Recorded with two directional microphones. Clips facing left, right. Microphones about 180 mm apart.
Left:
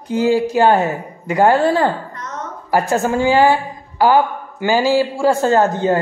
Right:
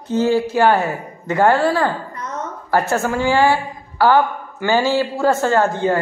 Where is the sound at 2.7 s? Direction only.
15° left (ahead or behind).